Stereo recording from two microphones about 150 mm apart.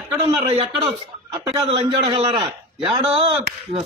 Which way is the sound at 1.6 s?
35° right (ahead or behind).